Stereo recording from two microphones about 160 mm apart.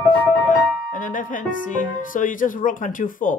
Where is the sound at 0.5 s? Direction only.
55° left (ahead or behind).